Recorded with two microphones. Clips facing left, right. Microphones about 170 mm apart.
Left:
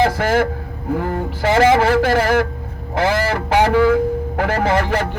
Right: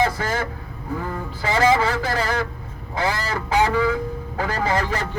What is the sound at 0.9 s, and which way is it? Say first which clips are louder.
A man's voice: left 6 dB; 75° left (ahead or behind).